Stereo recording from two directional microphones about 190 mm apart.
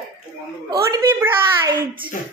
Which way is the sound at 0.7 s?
20° right (ahead or behind).